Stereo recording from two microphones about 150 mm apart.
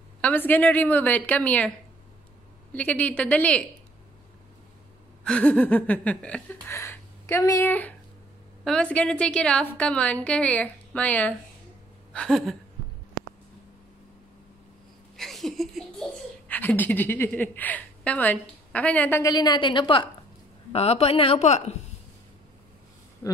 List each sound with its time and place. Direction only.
0.2 s a woman's voice: 10° left (ahead or behind)
2.7 s a woman's voice: 10° left (ahead or behind)
5.2 s a woman's voice: 5° left (ahead or behind)
12.1 s a sound: 5° left (ahead or behind)
15.1 s a sound: centre (ahead or behind)
16.4 s a woman's voice: 10° left (ahead or behind)
19.3 s a woman's voice: 30° left (ahead or behind); by 21.7 s 45° left (ahead or behind)